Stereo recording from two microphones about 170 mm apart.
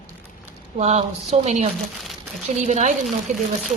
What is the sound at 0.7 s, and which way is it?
A woman's voice, 40° right (ahead or behind).